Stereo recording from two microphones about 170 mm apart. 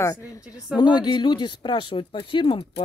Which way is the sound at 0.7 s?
25° left (ahead or behind).